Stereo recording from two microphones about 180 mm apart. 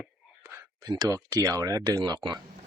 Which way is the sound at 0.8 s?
20° right (ahead or behind).